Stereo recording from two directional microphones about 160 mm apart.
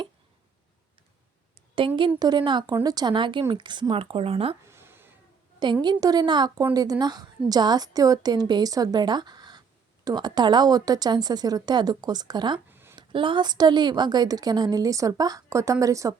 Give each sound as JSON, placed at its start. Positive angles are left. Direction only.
{"t": 2.0, "sound": "a woman's voice", "side_deg": -25}
{"t": 4.6, "sound": "cat", "side_deg": -15}
{"t": 5.8, "sound": "a woman's voice", "side_deg": -25}
{"t": 12.7, "sound": "a sound", "side_deg": -15}
{"t": 13.0, "sound": "a woman's voice", "side_deg": -30}